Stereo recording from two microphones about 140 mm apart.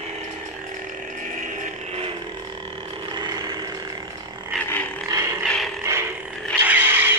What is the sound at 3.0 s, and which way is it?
Vehicle, 30° right (ahead or behind).